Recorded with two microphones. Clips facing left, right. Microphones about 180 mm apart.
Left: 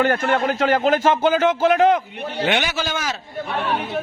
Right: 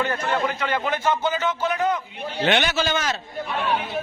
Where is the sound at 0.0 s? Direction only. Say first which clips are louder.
Left 5 dB; 55° left (ahead or behind).